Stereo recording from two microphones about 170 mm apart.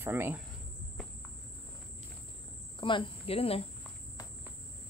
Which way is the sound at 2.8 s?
30° left (ahead or behind).